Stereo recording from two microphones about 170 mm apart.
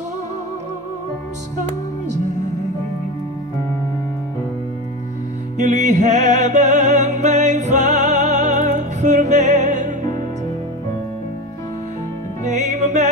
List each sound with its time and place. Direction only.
1.6 s music: 45° right (ahead or behind)
5.6 s music: 45° right (ahead or behind)
12.4 s music: 45° right (ahead or behind)